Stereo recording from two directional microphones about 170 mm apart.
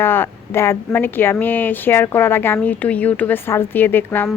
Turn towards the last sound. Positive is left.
turn(degrees=10)  # may be behind; listen again after turning